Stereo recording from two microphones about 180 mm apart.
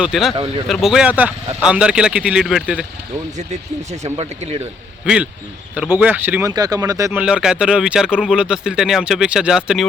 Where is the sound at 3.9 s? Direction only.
35° right (ahead or behind).